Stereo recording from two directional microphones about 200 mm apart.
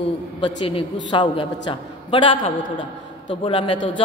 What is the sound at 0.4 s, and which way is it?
A woman's voice, 25° left (ahead or behind).